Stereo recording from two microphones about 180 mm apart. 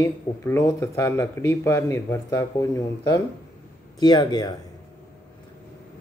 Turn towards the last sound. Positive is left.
turn(degrees=25)  # may be behind; listen again after turning